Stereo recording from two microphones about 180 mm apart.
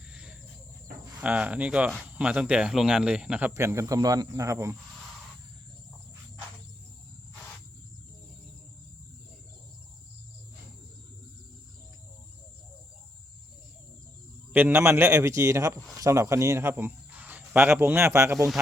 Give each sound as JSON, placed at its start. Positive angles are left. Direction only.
{"t": 0.1, "sound": "cricket", "side_deg": -5}
{"t": 1.2, "sound": "speech", "side_deg": -5}
{"t": 14.5, "sound": "speech", "side_deg": -10}